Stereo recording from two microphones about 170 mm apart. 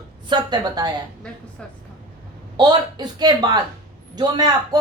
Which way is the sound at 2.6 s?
25° right (ahead or behind).